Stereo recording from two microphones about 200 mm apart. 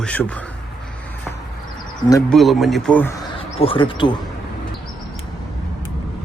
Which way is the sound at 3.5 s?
25° left (ahead or behind).